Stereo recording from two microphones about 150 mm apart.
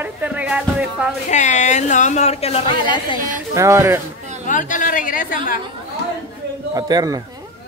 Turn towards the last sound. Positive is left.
turn(degrees=-25)  # may be behind; listen again after turning